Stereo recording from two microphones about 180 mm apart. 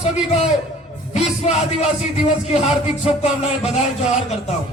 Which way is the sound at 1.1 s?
40° left (ahead or behind).